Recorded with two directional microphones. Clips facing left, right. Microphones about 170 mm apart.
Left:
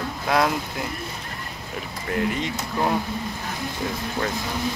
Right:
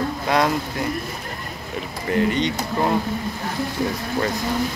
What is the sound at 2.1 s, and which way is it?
Speech, centre (ahead or behind).